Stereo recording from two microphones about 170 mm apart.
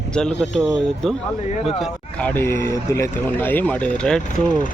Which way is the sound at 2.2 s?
15° left (ahead or behind).